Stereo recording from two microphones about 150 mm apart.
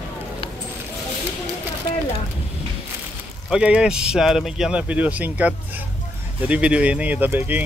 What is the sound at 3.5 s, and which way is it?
A man's voice, 5° right (ahead or behind).